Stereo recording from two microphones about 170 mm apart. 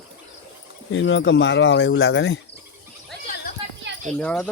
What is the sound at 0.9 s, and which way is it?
Speech, 90° left.